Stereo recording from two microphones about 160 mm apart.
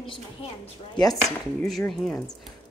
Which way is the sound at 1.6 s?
Centre (ahead or behind).